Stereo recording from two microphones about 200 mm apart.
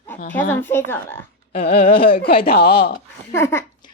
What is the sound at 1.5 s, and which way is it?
Speech, 25° left (ahead or behind).